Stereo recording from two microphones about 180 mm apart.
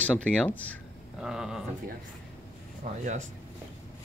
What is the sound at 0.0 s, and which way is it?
Speech, 5° left (ahead or behind).